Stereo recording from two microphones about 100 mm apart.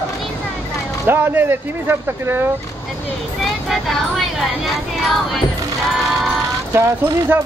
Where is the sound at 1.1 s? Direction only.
20° right (ahead or behind).